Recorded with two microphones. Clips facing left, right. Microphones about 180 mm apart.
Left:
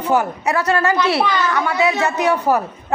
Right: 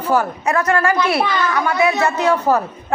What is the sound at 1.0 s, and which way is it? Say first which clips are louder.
Speech: even; 10° right (ahead or behind).